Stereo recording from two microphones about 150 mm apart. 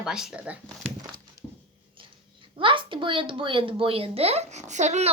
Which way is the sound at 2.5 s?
35° right (ahead or behind).